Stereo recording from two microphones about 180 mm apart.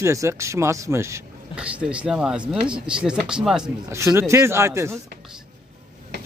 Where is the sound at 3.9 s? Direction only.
15° right (ahead or behind).